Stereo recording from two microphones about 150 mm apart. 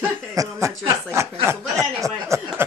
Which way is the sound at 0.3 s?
20° right (ahead or behind).